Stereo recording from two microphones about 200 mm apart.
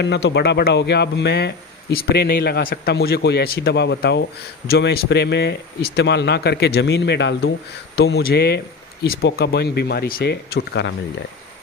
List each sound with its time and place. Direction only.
0.0 s speech: 60° left (ahead or behind)